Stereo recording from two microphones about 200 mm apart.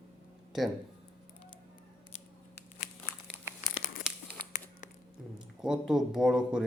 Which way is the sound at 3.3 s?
10° right (ahead or behind).